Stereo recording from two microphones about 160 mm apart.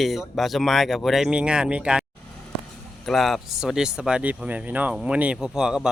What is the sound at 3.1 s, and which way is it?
Speech, centre (ahead or behind).